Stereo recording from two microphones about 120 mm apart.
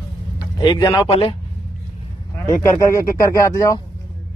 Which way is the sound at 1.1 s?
50° left (ahead or behind).